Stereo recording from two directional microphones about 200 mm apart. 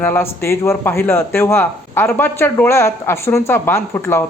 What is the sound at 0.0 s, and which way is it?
Speech, 10° left (ahead or behind).